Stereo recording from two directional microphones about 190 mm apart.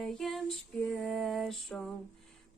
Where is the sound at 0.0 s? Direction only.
Centre (ahead or behind).